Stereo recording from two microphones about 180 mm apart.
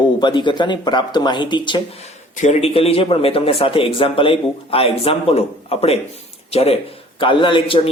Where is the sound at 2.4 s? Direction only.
35° left (ahead or behind).